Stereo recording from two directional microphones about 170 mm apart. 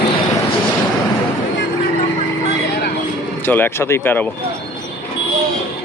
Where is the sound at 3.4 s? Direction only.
10° left (ahead or behind).